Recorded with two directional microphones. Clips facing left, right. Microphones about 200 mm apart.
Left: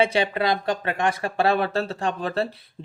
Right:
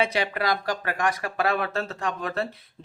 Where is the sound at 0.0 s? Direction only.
25° left (ahead or behind).